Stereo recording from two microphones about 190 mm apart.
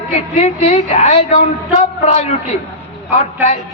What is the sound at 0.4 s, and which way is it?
A man's voice, 30° left (ahead or behind).